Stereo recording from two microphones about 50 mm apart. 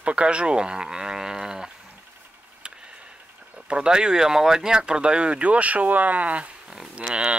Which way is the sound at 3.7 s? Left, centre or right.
Centre.